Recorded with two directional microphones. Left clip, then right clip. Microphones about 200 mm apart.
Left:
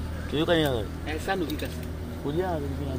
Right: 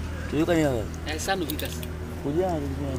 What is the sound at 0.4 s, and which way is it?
Speech, 50° right (ahead or behind).